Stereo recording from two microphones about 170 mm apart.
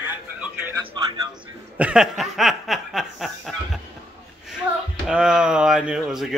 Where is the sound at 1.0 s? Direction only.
25° right (ahead or behind).